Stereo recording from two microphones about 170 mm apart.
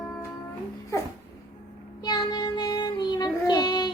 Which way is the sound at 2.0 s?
25° left (ahead or behind).